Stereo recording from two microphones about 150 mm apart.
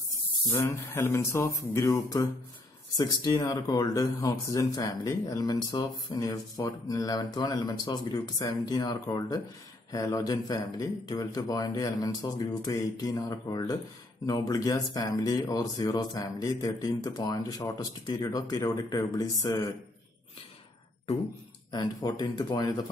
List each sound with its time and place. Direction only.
0.7 s speech: 15° left (ahead or behind)
21.7 s speech: 25° left (ahead or behind)